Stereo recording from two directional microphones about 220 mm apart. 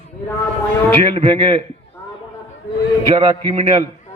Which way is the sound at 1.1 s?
25° right (ahead or behind).